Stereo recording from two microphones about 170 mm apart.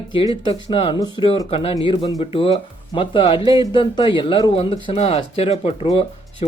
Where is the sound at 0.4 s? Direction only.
35° left (ahead or behind).